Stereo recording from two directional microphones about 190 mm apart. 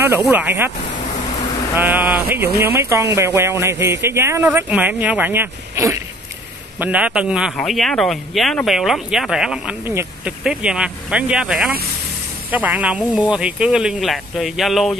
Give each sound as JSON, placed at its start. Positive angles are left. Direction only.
{"t": 0.3, "sound": "speech", "side_deg": -10}
{"t": 1.8, "sound": "speech", "side_deg": -10}
{"t": 2.4, "sound": "speech", "side_deg": -55}
{"t": 2.8, "sound": "speech", "side_deg": -15}